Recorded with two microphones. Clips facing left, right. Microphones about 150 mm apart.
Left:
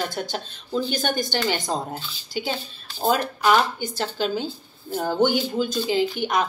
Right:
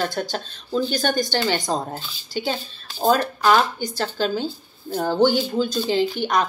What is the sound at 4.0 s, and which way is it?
Speech, 15° left (ahead or behind).